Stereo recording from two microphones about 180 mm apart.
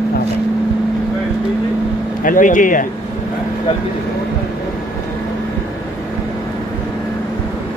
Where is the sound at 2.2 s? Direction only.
45° left (ahead or behind).